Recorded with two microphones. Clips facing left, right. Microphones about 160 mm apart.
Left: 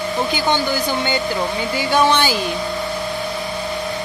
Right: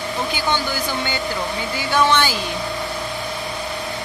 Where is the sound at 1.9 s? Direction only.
15° left (ahead or behind).